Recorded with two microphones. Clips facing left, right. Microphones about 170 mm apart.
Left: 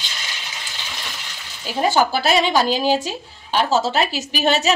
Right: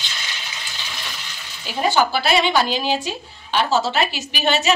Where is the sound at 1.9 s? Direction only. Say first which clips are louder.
Left 1 dB; 45° left (ahead or behind).